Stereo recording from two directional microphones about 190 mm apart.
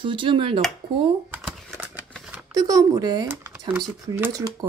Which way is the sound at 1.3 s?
10° right (ahead or behind).